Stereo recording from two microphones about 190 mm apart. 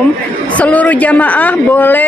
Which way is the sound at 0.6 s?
5° left (ahead or behind).